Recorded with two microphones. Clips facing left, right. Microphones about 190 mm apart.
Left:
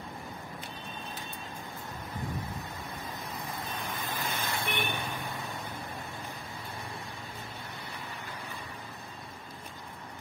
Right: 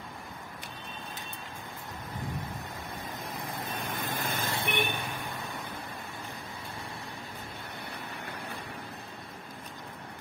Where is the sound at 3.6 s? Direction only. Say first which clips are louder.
Right 2 dB; 50° right (ahead or behind).